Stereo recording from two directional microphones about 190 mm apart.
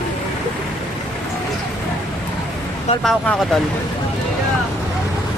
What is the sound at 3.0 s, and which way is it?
Speech, centre (ahead or behind).